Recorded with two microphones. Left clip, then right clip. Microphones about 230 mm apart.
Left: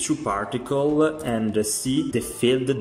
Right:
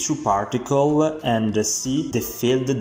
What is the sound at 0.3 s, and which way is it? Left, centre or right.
Speech, centre.